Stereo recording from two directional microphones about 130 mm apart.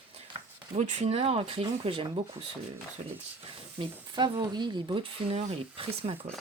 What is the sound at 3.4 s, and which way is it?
Speech, 40° right (ahead or behind).